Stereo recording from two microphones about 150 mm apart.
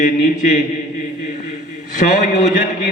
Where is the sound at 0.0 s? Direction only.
55° left (ahead or behind).